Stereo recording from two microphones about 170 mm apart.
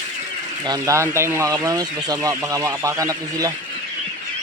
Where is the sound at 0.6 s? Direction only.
20° right (ahead or behind).